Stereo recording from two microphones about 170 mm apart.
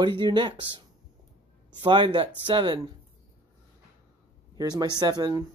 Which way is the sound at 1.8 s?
30° right (ahead or behind).